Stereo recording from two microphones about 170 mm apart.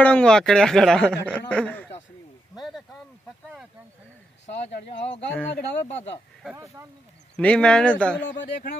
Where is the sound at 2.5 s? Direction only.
Centre (ahead or behind).